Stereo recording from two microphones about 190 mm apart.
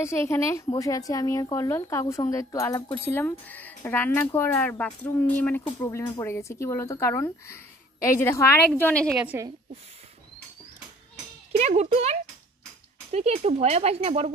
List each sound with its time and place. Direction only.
0.0 s speech: 15° left (ahead or behind)
9.2 s a woman's voice: 10° right (ahead or behind)
11.6 s speech: 35° right (ahead or behind)